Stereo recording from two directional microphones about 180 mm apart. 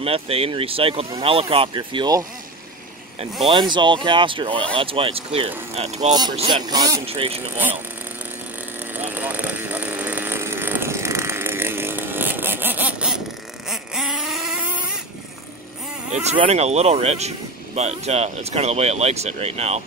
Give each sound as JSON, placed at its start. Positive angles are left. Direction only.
{"t": 0.0, "sound": "speech", "side_deg": -30}
{"t": 3.4, "sound": "speech", "side_deg": -25}
{"t": 8.9, "sound": "vehicle", "side_deg": -10}
{"t": 13.7, "sound": "a sound", "side_deg": 0}
{"t": 16.1, "sound": "speech", "side_deg": -40}